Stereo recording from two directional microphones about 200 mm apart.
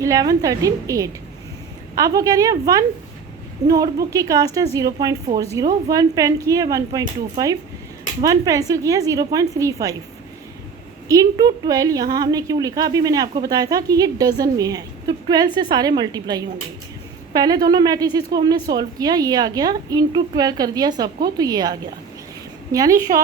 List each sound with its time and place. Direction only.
0.0 s speech: 15° right (ahead or behind)
11.1 s a woman's voice: 15° right (ahead or behind)